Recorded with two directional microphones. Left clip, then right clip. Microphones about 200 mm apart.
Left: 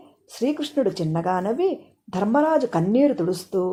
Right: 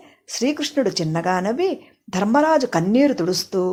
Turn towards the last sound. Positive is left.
turn(degrees=-20)  # may be behind; listen again after turning